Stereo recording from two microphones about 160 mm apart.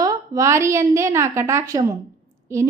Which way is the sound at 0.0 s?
20° right (ahead or behind).